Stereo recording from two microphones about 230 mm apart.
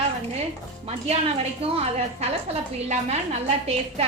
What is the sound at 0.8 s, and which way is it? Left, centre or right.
A woman's voice, right.